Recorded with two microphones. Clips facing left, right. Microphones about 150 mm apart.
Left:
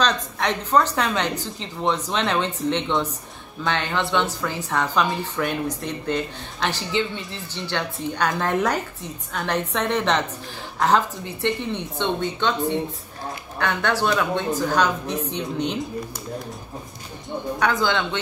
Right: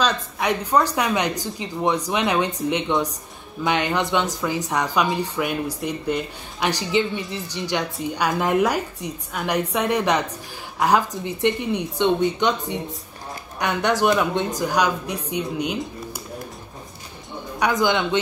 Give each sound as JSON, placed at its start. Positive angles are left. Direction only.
{"t": 0.0, "sound": "a woman's voice", "side_deg": -10}
{"t": 17.6, "sound": "a woman's voice", "side_deg": -15}